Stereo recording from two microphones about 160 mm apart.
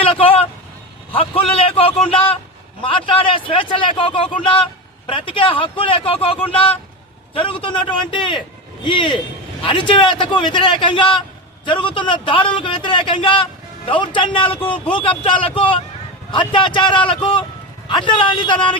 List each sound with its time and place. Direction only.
0.0 s vehicle: 35° left (ahead or behind)
1.1 s a man's voice: 35° left (ahead or behind)